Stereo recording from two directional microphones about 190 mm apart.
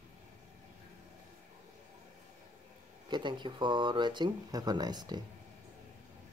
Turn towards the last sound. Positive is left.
turn(degrees=-20)  # may be behind; listen again after turning